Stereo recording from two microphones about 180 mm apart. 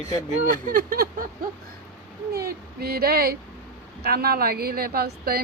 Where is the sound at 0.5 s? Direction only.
50° right (ahead or behind).